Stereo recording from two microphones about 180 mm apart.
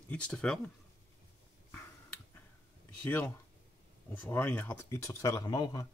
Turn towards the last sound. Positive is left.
turn(degrees=20)  # may be behind; listen again after turning